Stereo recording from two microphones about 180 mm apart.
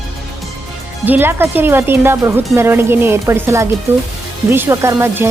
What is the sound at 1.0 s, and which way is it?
Speech, 10° right (ahead or behind).